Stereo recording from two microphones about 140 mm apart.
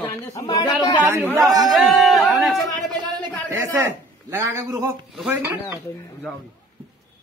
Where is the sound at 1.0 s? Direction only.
15° right (ahead or behind).